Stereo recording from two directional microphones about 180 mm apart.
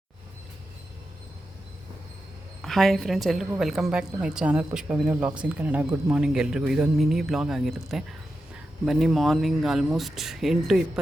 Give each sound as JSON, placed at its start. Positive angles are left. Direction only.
{"t": 2.6, "sound": "a woman's voice", "side_deg": 0}